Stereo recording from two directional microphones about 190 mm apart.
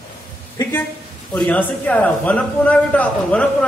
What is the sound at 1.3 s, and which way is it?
A woman's voice, 5° left (ahead or behind).